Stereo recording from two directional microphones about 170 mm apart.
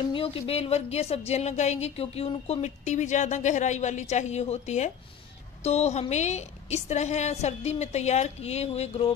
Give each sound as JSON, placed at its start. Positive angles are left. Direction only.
{"t": 0.1, "sound": "a woman's voice", "side_deg": 35}